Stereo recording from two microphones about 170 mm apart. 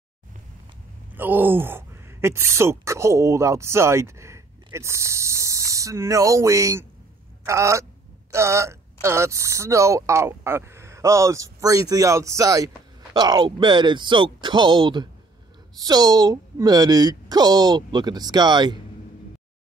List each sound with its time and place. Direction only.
1.1 s speech: 10° right (ahead or behind)